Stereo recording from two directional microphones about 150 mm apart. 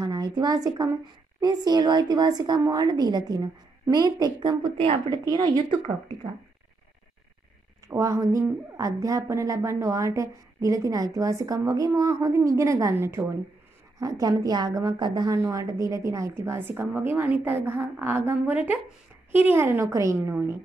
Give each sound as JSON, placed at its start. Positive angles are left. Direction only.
{"t": 0.0, "sound": "a woman's voice", "side_deg": -30}
{"t": 5.1, "sound": "a woman's voice", "side_deg": -25}
{"t": 7.9, "sound": "a woman's voice", "side_deg": -20}